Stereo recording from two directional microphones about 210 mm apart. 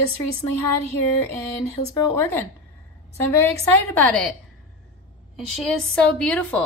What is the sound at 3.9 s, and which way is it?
Speech, 5° left (ahead or behind).